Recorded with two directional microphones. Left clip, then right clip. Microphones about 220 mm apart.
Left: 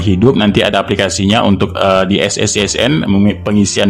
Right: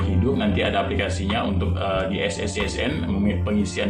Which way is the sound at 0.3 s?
55° left (ahead or behind).